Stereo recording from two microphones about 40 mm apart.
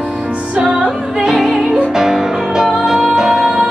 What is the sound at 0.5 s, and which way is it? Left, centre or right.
Music, right.